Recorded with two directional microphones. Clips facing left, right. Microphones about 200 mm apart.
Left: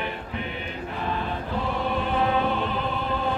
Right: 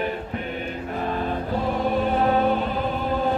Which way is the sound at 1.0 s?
45° right (ahead or behind).